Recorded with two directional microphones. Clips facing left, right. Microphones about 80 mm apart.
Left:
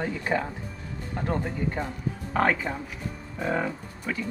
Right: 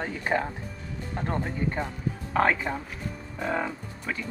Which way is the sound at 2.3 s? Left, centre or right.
Centre.